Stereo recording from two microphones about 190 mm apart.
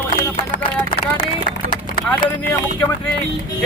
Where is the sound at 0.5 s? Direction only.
40° left (ahead or behind).